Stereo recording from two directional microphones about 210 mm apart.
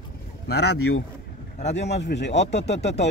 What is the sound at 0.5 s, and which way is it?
Speech, 50° left (ahead or behind).